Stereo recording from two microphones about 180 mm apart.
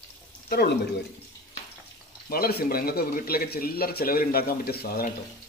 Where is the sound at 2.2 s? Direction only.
55° left (ahead or behind).